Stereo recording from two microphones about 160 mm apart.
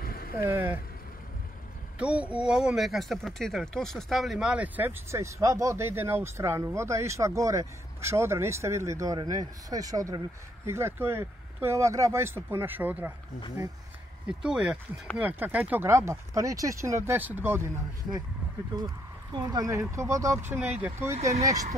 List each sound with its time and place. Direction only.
0.0 s vehicle: 65° left (ahead or behind)
0.4 s speech: 15° right (ahead or behind)
2.0 s speech: 10° right (ahead or behind)
14.4 s speech: 5° right (ahead or behind)
19.3 s speech: 25° right (ahead or behind)